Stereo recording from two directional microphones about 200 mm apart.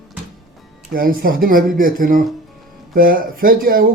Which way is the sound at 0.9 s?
50° right (ahead or behind).